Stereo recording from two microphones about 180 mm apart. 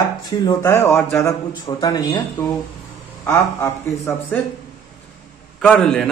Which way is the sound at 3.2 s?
15° left (ahead or behind).